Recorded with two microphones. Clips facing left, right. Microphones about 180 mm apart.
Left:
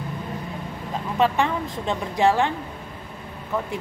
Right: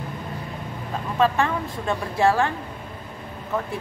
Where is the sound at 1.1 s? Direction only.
20° left (ahead or behind).